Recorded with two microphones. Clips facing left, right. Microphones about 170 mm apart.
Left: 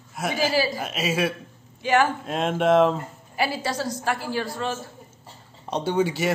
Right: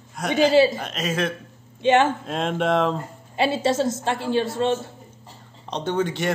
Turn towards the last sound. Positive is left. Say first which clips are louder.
# left 1 dB
turn(degrees=5)  # may be behind; listen again after turning